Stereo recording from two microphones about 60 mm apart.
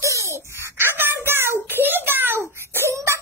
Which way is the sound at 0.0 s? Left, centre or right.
Right.